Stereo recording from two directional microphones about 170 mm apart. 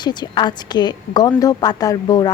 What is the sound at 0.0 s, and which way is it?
A woman's voice, 25° left (ahead or behind).